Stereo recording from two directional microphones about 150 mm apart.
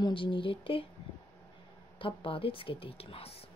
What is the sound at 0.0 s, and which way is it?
Speech, 35° left (ahead or behind).